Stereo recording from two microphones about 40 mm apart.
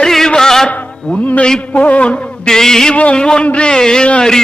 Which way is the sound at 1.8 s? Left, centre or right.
Left.